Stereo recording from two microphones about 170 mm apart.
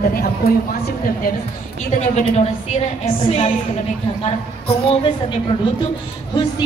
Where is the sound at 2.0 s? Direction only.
40° left (ahead or behind).